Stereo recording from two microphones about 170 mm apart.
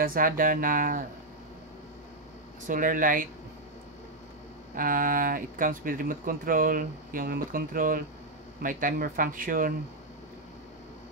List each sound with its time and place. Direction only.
0.0 s speech: 55° right (ahead or behind)
2.6 s speech: 55° right (ahead or behind)
4.7 s speech: 55° right (ahead or behind)